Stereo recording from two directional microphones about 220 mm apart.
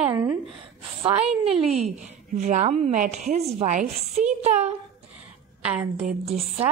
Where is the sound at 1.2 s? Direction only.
Centre (ahead or behind).